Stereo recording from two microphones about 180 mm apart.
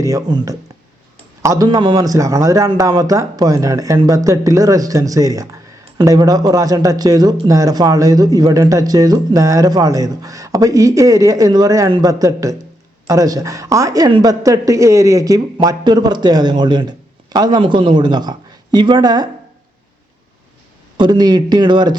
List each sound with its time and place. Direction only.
0.0 s speech: 20° right (ahead or behind)
21.0 s speech: 25° right (ahead or behind)